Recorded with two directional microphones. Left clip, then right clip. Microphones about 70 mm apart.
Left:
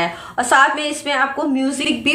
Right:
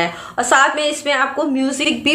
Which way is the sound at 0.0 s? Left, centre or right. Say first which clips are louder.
Right 1 dB; right.